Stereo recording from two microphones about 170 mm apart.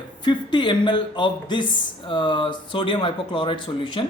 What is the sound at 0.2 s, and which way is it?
Speech, 25° left (ahead or behind).